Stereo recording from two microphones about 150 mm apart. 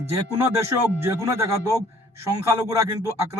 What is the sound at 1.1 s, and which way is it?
A man's voice, 20° right (ahead or behind).